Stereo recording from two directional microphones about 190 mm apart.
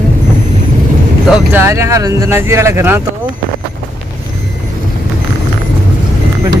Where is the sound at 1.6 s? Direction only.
15° right (ahead or behind).